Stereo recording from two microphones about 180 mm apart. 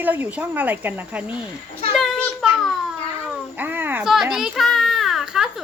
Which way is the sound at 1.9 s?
Centre (ahead or behind).